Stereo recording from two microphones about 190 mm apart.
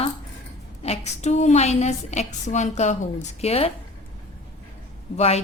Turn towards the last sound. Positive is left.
turn(degrees=35)  # may be behind; listen again after turning